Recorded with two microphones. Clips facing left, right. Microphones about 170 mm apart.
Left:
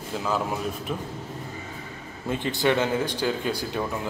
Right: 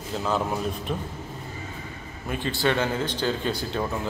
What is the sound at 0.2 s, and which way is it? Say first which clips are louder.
Speech: right 1 dB; 5° left (ahead or behind).